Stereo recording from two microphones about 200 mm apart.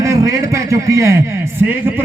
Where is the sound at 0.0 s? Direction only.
15° right (ahead or behind).